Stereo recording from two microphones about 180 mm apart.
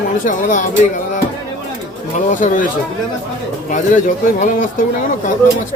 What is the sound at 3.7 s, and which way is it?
Speech, 45° left (ahead or behind).